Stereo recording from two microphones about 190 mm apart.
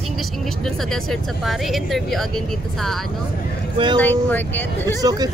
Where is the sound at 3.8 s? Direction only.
25° right (ahead or behind).